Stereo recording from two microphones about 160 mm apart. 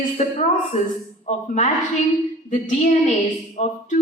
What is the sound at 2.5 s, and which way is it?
A woman's voice, 50° left (ahead or behind).